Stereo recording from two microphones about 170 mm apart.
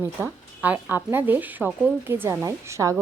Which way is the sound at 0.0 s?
10° right (ahead or behind).